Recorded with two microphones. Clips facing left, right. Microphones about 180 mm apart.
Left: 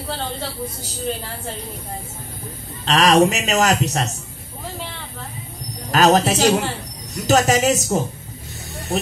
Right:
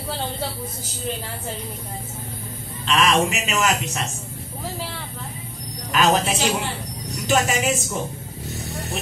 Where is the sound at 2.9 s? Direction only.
40° left (ahead or behind).